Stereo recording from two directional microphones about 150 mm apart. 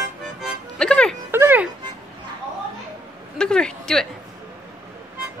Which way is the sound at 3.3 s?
5° left (ahead or behind).